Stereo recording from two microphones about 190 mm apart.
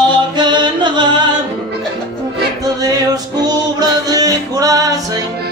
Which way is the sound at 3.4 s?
20° right (ahead or behind).